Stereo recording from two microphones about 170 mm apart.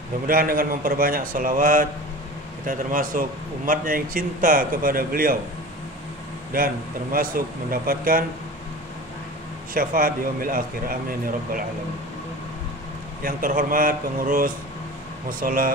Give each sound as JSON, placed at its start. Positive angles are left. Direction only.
{"t": 0.3, "sound": "a man's voice", "side_deg": -55}
{"t": 6.5, "sound": "a man's voice", "side_deg": -60}
{"t": 9.8, "sound": "a man's voice", "side_deg": -55}
{"t": 13.2, "sound": "a man's voice", "side_deg": -55}